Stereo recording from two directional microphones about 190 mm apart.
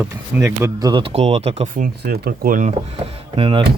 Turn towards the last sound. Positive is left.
turn(degrees=-25)  # may be behind; listen again after turning